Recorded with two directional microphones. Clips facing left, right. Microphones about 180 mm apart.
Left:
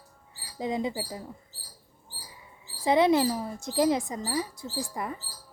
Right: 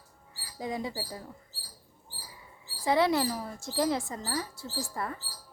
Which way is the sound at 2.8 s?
20° left (ahead or behind).